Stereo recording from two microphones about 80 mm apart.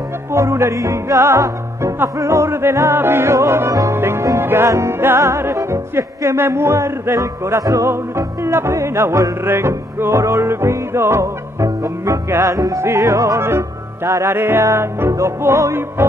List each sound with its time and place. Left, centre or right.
0.3 s music: right
12.5 s music: right
14.3 s music: right